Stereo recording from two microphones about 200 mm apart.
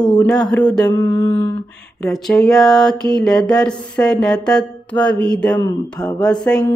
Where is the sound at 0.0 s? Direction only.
5° left (ahead or behind).